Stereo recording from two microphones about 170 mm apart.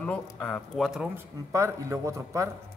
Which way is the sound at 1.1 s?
15° right (ahead or behind).